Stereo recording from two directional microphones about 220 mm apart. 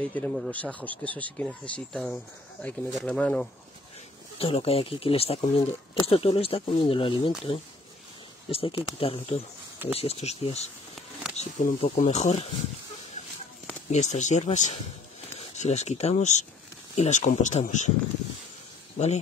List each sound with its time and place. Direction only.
0.1 s speech: 5° left (ahead or behind)
4.4 s speech: 25° left (ahead or behind)
13.9 s speech: 30° left (ahead or behind)